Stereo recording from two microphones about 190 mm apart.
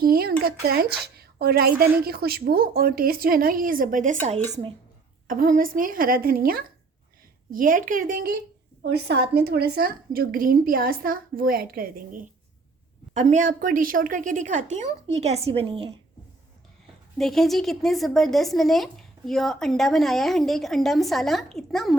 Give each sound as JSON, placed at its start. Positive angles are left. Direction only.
{"t": 0.0, "sound": "a woman's voice", "side_deg": -55}
{"t": 8.9, "sound": "a woman's voice", "side_deg": -60}
{"t": 17.2, "sound": "a woman's voice", "side_deg": 0}